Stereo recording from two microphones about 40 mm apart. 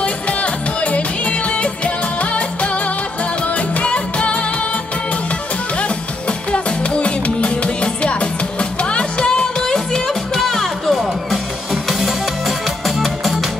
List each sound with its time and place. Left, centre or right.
0.0 s music: left
5.8 s music: left; by 13.5 s centre